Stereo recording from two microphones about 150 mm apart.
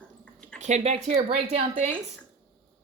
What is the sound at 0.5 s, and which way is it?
Speech, 50° right (ahead or behind).